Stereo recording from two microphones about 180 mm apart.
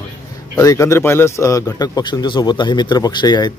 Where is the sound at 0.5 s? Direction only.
15° left (ahead or behind).